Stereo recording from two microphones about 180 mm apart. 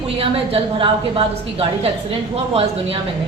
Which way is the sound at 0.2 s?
30° right (ahead or behind).